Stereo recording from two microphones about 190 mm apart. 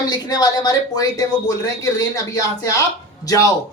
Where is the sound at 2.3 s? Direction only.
15° left (ahead or behind).